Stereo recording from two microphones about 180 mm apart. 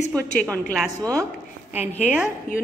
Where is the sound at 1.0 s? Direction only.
15° right (ahead or behind).